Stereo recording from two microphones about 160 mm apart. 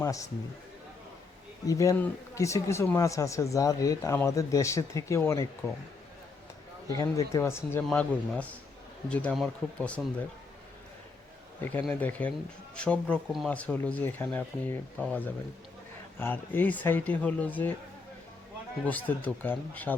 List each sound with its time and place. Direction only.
0.0 s a man's voice: 20° left (ahead or behind)
1.6 s speech: 20° left (ahead or behind)
6.9 s speech: 20° left (ahead or behind)
11.6 s speech: 10° left (ahead or behind)
16.1 s speech: 10° left (ahead or behind)
18.9 s speech: 10° left (ahead or behind)